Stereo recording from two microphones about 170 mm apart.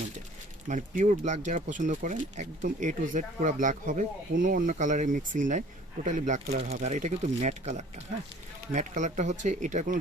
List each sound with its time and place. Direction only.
0.7 s speech: 45° right (ahead or behind)